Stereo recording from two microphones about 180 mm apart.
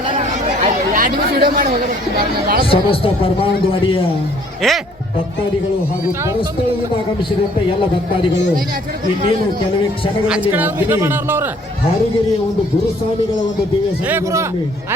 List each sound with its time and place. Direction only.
0.1 s chatter: 40° right (ahead or behind)
2.1 s speech: 55° right (ahead or behind)
2.6 s a man's voice: 30° left (ahead or behind)
4.6 s speech: centre (ahead or behind)
8.3 s speech: 75° left (ahead or behind)
10.5 s speech: 10° right (ahead or behind)
14.1 s speech: 15° right (ahead or behind)